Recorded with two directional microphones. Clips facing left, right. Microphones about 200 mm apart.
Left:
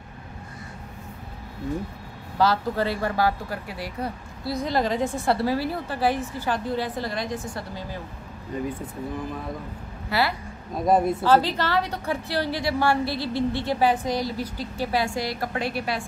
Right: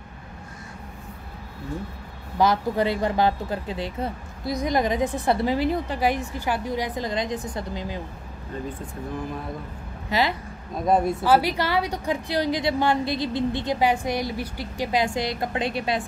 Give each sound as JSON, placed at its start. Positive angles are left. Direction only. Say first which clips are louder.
{"t": 2.3, "sound": "speech", "louder": "right 1 dB", "side_deg": -15}
{"t": 8.5, "sound": "speech", "louder": "left 3 dB", "side_deg": 10}
{"t": 10.0, "sound": "a woman's voice", "louder": "right 1 dB", "side_deg": -20}